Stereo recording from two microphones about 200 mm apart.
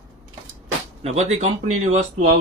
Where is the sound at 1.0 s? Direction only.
35° right (ahead or behind).